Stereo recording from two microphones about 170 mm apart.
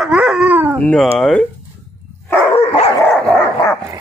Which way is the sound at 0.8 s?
10° left (ahead or behind).